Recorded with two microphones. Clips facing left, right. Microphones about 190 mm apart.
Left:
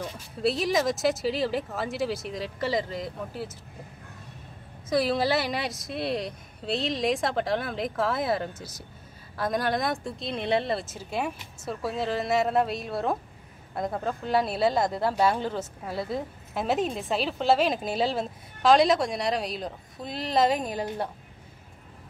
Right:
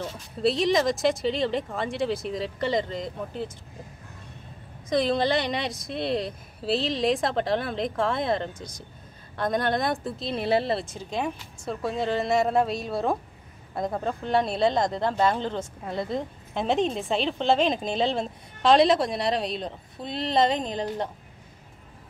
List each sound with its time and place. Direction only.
0.4 s speech: centre (ahead or behind)
4.8 s speech: 5° left (ahead or behind)